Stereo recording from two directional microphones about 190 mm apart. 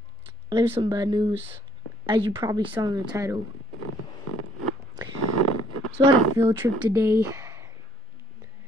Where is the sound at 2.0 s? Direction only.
25° right (ahead or behind).